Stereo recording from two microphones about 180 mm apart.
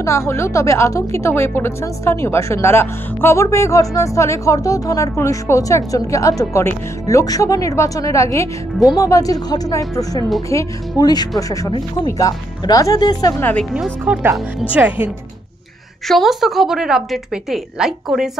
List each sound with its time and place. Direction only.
0.0 s speech: 15° left (ahead or behind)
13.4 s speech: 10° left (ahead or behind)
14.0 s speech: 10° right (ahead or behind)
16.1 s a woman's voice: centre (ahead or behind)